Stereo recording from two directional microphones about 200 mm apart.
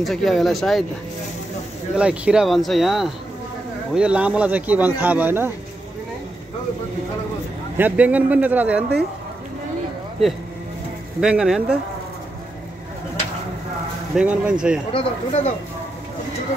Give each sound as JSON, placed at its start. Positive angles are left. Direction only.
{"t": 0.0, "sound": "speech", "side_deg": 0}
{"t": 2.0, "sound": "speech", "side_deg": -5}
{"t": 7.7, "sound": "speech", "side_deg": -10}
{"t": 11.1, "sound": "speech", "side_deg": -5}
{"t": 14.1, "sound": "speech", "side_deg": -5}
{"t": 14.9, "sound": "speech", "side_deg": 25}